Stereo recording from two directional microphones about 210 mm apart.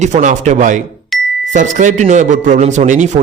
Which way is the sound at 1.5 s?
35° right (ahead or behind).